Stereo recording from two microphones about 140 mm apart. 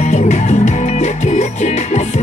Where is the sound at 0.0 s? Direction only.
55° left (ahead or behind).